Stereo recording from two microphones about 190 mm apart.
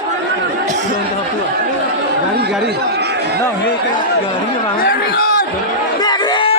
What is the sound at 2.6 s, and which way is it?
Chatter, 60° right (ahead or behind).